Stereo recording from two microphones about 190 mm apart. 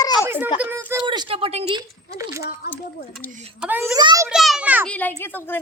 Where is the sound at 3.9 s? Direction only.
20° right (ahead or behind).